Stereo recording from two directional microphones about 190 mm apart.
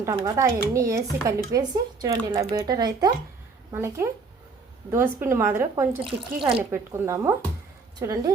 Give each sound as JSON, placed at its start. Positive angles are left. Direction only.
{"t": 0.4, "sound": "a woman's voice", "side_deg": -20}
{"t": 6.1, "sound": "speech", "side_deg": -30}
{"t": 6.6, "sound": "a woman's voice", "side_deg": -15}